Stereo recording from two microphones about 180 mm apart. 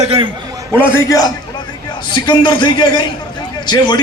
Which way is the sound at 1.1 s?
20° left (ahead or behind).